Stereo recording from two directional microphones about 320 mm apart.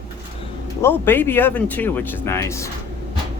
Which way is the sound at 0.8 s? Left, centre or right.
Centre.